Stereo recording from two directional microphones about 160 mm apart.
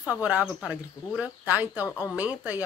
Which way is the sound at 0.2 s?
10° right (ahead or behind).